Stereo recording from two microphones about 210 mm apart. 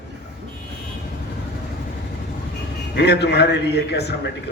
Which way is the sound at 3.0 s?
50° left (ahead or behind).